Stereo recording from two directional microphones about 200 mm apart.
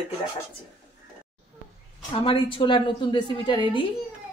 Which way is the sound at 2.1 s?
25° left (ahead or behind).